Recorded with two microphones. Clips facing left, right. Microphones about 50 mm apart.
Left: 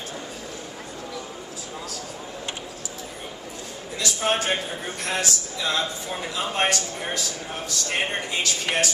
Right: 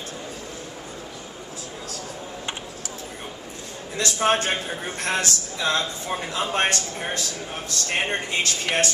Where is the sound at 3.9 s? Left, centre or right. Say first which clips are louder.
Right 3 dB; right.